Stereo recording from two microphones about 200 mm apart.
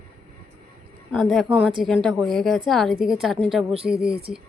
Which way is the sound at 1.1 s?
Centre (ahead or behind).